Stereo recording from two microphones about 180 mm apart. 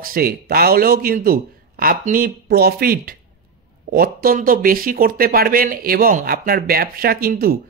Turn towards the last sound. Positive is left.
turn(degrees=-55)  # may be behind; listen again after turning